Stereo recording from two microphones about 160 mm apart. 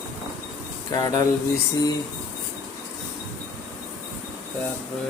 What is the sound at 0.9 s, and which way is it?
Speech, 25° left (ahead or behind).